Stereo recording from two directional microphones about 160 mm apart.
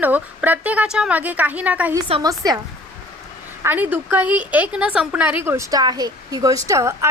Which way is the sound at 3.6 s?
10° right (ahead or behind).